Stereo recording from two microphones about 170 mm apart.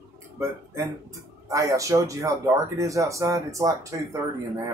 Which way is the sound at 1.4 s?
20° right (ahead or behind).